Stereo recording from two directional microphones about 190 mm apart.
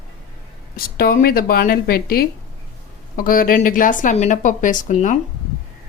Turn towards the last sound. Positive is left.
turn(degrees=40)  # may be behind; listen again after turning